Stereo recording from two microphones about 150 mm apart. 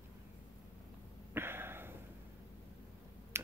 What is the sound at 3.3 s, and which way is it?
Finger snapping, 15° right (ahead or behind).